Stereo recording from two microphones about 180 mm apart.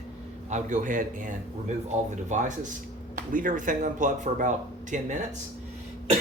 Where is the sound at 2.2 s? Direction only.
40° right (ahead or behind).